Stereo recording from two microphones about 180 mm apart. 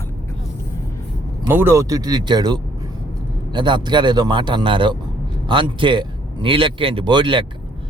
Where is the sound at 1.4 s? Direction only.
15° right (ahead or behind).